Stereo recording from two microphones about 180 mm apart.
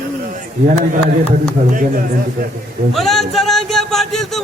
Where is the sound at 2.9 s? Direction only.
Centre (ahead or behind).